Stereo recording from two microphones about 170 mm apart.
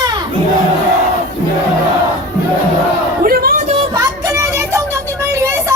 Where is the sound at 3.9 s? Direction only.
15° right (ahead or behind).